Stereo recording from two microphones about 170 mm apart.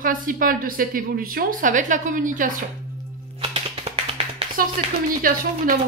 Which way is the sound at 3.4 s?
35° right (ahead or behind).